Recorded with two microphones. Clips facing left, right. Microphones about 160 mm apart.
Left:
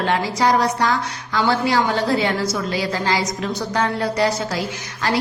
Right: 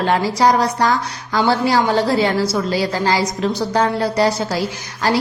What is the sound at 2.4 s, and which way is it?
A woman's voice, 35° right (ahead or behind).